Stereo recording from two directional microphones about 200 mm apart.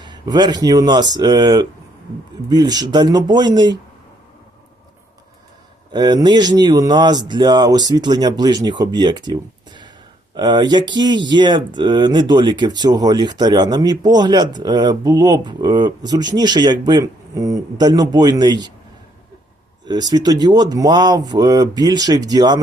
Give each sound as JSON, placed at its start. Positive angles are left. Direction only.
{"t": 0.0, "sound": "speech", "side_deg": -20}
{"t": 5.9, "sound": "speech", "side_deg": -20}
{"t": 19.8, "sound": "speech", "side_deg": -20}